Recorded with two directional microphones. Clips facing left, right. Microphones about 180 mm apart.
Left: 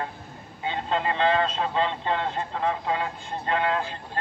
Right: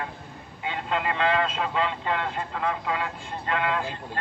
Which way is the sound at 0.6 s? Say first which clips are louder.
Left 2 dB; 30° left (ahead or behind).